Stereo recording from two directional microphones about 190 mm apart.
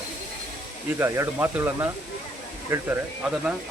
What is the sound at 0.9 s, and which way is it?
Speech, 15° right (ahead or behind).